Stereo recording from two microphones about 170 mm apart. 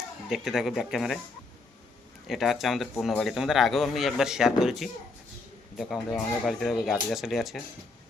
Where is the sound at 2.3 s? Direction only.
Centre (ahead or behind).